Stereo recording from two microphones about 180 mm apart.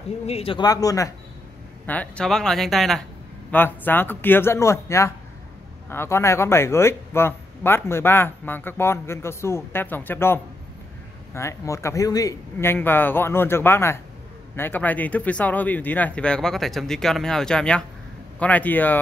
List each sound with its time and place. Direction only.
0.3 s speech: 30° left (ahead or behind)
1.9 s speech: 5° left (ahead or behind)